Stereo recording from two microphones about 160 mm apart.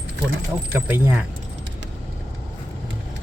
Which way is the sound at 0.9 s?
15° right (ahead or behind).